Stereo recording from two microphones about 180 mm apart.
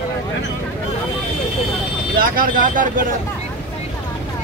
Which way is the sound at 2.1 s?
55° right (ahead or behind).